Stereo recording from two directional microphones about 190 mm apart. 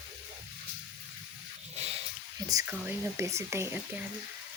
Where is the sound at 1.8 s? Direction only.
35° right (ahead or behind).